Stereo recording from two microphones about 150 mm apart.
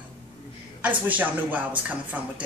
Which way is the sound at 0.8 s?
10° right (ahead or behind).